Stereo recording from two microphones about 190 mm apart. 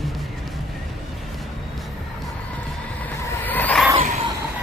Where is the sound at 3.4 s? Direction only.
10° left (ahead or behind).